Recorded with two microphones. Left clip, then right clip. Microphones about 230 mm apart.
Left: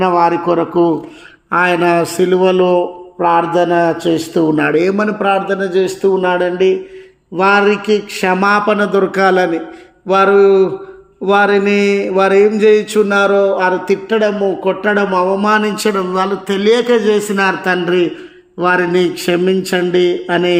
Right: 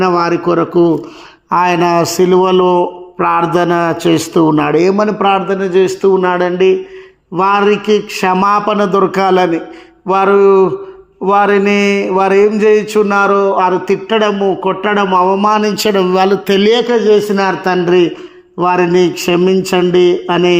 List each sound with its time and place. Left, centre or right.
0.0 s speech: right
16.8 s speech: centre